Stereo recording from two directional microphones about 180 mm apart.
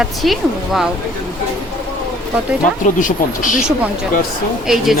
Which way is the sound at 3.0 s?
45° left (ahead or behind).